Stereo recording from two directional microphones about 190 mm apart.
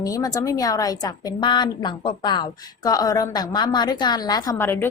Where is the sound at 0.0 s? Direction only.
20° left (ahead or behind).